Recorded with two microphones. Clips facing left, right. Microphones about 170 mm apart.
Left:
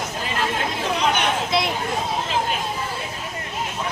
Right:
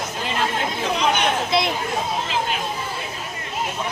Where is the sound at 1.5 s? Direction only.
Centre (ahead or behind).